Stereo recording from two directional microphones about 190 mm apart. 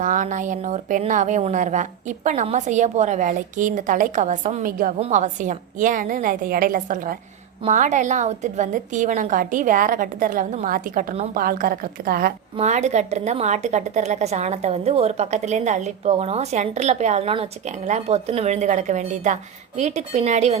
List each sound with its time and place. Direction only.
0.0 s a woman's voice: 40° right (ahead or behind)
12.5 s a woman's voice: 35° right (ahead or behind)